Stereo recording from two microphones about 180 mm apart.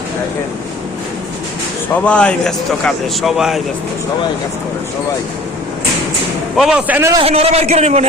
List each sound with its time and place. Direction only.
2.0 s a man's voice: 5° left (ahead or behind)
6.6 s a man's voice: 5° right (ahead or behind)
7.2 s a man's voice: 35° right (ahead or behind)